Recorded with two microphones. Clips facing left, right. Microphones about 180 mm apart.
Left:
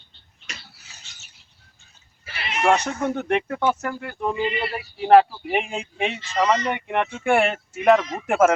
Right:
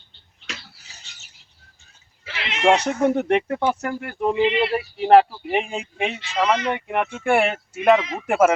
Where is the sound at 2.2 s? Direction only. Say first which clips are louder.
Left 2 dB; 90° right.